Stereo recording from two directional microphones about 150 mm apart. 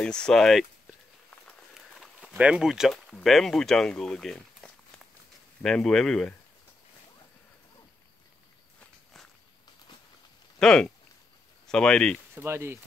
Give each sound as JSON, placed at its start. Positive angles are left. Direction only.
{"t": 0.0, "sound": "speech", "side_deg": 5}
{"t": 1.7, "sound": "a sound", "side_deg": -5}
{"t": 5.6, "sound": "speech", "side_deg": 5}
{"t": 10.6, "sound": "speech", "side_deg": 5}
{"t": 12.4, "sound": "speech", "side_deg": -15}